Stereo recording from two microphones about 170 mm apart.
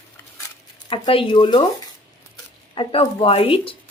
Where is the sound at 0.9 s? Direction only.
30° left (ahead or behind).